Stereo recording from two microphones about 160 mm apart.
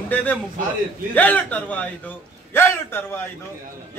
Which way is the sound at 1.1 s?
10° left (ahead or behind).